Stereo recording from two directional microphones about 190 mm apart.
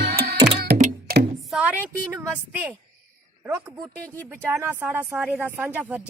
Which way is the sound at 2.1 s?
10° right (ahead or behind).